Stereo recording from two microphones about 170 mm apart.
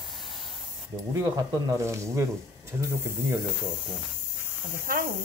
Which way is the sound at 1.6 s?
15° right (ahead or behind).